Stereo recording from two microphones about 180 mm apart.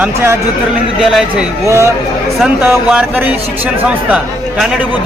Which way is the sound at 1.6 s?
15° right (ahead or behind).